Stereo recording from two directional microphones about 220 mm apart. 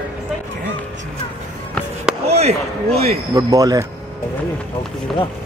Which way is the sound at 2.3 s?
30° right (ahead or behind).